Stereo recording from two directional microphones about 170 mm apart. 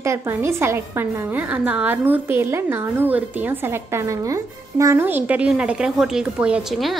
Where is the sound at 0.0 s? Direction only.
15° right (ahead or behind).